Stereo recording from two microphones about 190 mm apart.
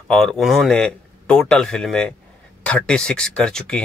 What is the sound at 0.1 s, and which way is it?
A man's voice, centre (ahead or behind).